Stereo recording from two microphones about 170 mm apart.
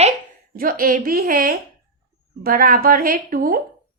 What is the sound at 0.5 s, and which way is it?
A woman's voice, 60° right (ahead or behind).